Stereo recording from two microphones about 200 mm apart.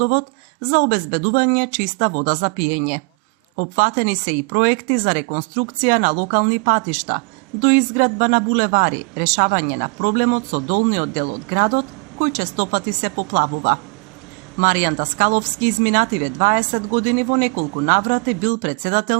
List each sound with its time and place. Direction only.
0.0 s a woman's voice: 40° right (ahead or behind)